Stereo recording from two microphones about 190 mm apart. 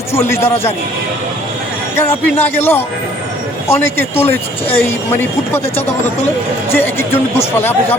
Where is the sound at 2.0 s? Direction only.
10° left (ahead or behind).